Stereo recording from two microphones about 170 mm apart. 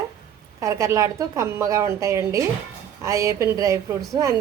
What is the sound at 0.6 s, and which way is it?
A woman's voice, 20° right (ahead or behind).